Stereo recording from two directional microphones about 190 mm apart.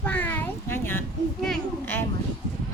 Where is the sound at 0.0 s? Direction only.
10° left (ahead or behind).